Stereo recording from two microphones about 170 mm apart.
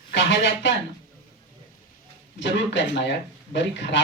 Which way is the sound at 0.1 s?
90° left.